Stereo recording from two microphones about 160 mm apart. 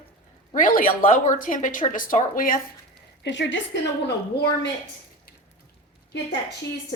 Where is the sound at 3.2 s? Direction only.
90° left.